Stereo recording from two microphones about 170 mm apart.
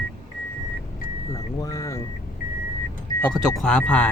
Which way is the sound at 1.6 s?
20° left (ahead or behind).